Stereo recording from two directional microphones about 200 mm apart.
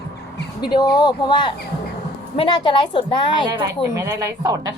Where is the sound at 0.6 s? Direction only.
20° left (ahead or behind).